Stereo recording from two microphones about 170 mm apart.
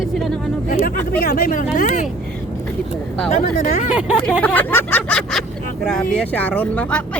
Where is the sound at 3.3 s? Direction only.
45° left (ahead or behind).